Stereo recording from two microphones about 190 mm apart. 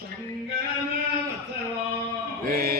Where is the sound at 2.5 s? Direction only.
50° right (ahead or behind).